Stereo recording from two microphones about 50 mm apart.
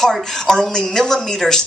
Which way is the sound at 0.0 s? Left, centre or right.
Centre.